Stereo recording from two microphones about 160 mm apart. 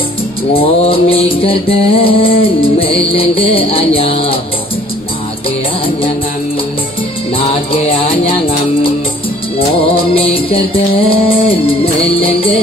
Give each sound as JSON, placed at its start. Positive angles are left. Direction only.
{"t": 0.5, "sound": "music", "side_deg": 35}
{"t": 7.3, "sound": "music", "side_deg": 35}
{"t": 10.1, "sound": "music", "side_deg": 35}